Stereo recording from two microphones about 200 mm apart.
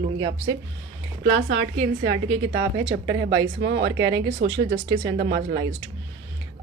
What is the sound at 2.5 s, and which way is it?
Speech, 60° right (ahead or behind).